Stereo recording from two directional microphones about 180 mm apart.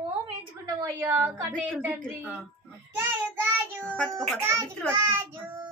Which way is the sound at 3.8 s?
5° left (ahead or behind).